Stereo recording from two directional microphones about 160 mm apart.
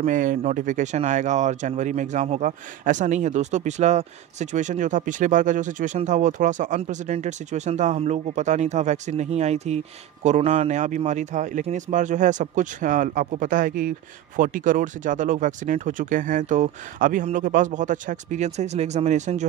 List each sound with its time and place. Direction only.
0.0 s speech: 55° right (ahead or behind)